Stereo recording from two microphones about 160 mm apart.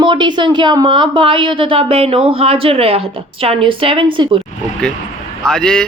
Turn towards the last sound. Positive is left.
turn(degrees=5)  # may be behind; listen again after turning